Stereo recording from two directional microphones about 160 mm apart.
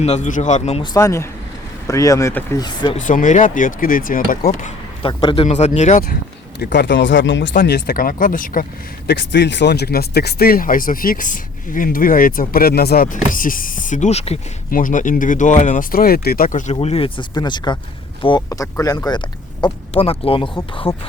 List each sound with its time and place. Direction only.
0.0 s a man's voice: 45° left (ahead or behind)
0.9 s speech: 20° left (ahead or behind)
2.9 s speech: 50° left (ahead or behind)
5.0 s a man's voice: 35° left (ahead or behind)
5.5 s a man's voice: 45° left (ahead or behind)
6.6 s speech: 90° left
7.5 s speech: 65° left (ahead or behind)
9.0 s speech: 90° left; by 13.1 s 70° left (ahead or behind)
13.3 s speech: 60° left (ahead or behind); by 14.3 s 40° left (ahead or behind)
14.7 s speech: 60° left (ahead or behind)
16.7 s speech: 40° left (ahead or behind)
20.9 s speech: 15° left (ahead or behind)